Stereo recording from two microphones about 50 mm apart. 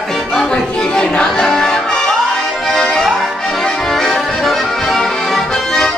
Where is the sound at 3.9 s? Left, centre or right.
Centre.